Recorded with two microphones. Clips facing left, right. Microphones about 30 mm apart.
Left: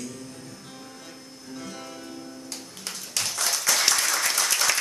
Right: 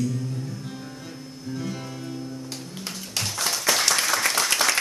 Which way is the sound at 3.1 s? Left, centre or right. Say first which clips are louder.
Right 1 dB; centre.